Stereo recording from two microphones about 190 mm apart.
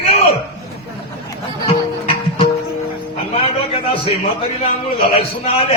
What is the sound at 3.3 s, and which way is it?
A man's voice, 30° left (ahead or behind).